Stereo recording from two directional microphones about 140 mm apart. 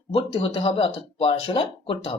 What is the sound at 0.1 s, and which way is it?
Speech, 40° left (ahead or behind).